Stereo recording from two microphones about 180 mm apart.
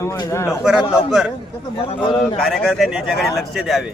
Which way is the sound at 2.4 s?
Centre (ahead or behind).